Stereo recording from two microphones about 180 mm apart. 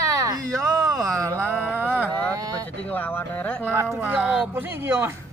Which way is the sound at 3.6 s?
10° right (ahead or behind).